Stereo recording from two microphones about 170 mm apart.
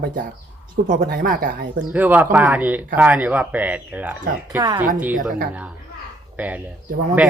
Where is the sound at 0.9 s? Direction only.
60° right (ahead or behind).